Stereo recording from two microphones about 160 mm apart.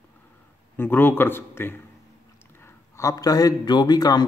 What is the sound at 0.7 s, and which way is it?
A man's voice, 15° left (ahead or behind).